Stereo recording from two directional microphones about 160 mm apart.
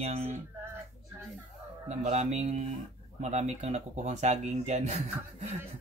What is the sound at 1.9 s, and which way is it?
Speech, 45° right (ahead or behind).